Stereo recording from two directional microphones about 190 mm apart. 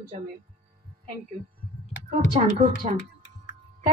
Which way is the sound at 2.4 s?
35° right (ahead or behind).